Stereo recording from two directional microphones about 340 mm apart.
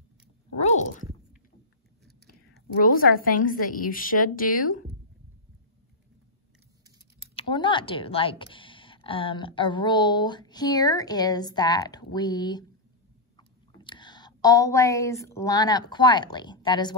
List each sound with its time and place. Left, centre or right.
0.7 s a woman's voice: left
2.8 s a woman's voice: left
7.3 s speech: centre